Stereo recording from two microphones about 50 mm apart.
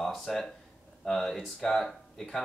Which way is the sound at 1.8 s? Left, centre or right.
Centre.